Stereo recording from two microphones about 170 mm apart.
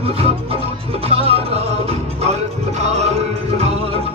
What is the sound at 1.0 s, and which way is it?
Music, 35° right (ahead or behind).